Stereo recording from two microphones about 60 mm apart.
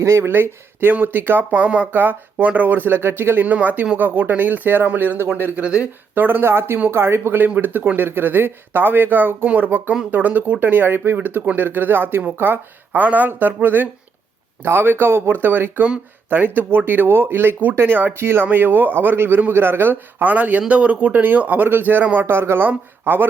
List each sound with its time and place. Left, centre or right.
0.0 s speech: right
0.3 s a man's voice: right
1.5 s speech: right
1.9 s a man's voice: right
3.4 s a man's voice: right
5.6 s speech: centre
6.1 s a man's voice: right
22.3 s a man's voice: right